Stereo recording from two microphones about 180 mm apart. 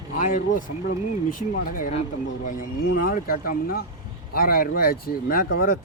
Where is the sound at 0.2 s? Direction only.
45° left (ahead or behind).